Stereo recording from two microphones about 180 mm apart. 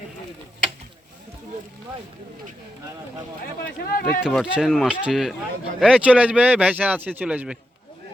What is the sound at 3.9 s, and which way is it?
Speech, 60° left (ahead or behind).